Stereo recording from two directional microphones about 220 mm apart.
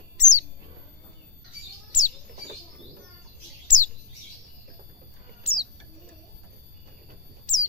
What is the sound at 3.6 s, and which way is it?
Bird, 35° left (ahead or behind).